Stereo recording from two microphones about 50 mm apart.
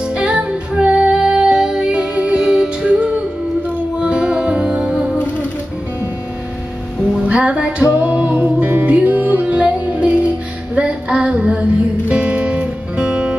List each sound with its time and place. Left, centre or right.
0.0 s music: right
2.8 s music: right
7.2 s music: right
10.7 s female singing: right
12.1 s music: right